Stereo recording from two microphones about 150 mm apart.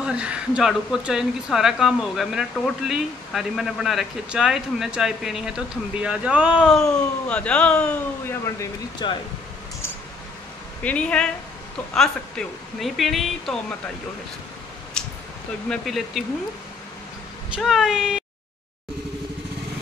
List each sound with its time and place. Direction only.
0.0 s a woman's voice: 5° right (ahead or behind); by 8.6 s 10° left (ahead or behind)
9.0 s speech: 30° left (ahead or behind)
10.8 s a woman's voice: 10° left (ahead or behind)
15.0 s a sound: 5° left (ahead or behind)
15.7 s a woman's voice: centre (ahead or behind)
17.6 s a woman's voice: centre (ahead or behind)